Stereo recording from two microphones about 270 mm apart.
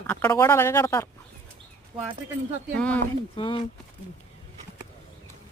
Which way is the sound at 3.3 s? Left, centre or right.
Centre.